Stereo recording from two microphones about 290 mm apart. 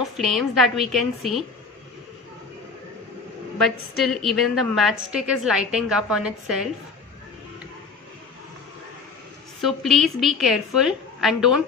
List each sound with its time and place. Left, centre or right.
0.0 s a woman's voice: centre
3.5 s a woman's voice: centre
9.6 s a woman's voice: centre